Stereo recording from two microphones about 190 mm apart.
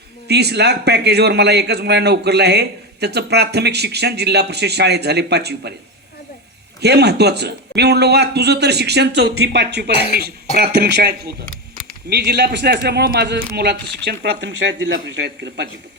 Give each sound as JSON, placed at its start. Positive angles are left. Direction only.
{"t": 0.3, "sound": "a man's voice", "side_deg": -60}
{"t": 6.8, "sound": "a man's voice", "side_deg": -60}